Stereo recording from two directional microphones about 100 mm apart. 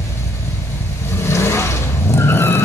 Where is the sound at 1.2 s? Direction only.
30° left (ahead or behind).